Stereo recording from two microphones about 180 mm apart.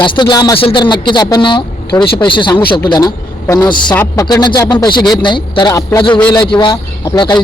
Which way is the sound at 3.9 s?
10° left (ahead or behind).